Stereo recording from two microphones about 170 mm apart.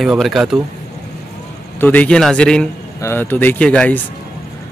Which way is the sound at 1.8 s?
10° left (ahead or behind).